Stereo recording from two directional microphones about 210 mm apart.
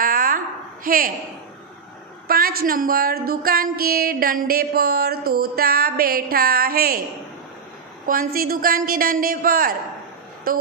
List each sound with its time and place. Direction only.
0.0 s a sound: 40° right (ahead or behind)
0.8 s speech: 40° right (ahead or behind)
2.2 s speech: 45° right (ahead or behind)
8.1 s speech: 45° right (ahead or behind)